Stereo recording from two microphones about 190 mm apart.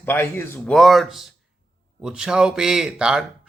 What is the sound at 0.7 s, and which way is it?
Speech, centre (ahead or behind).